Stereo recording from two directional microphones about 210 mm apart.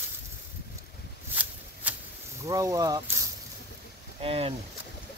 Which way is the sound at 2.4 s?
15° right (ahead or behind).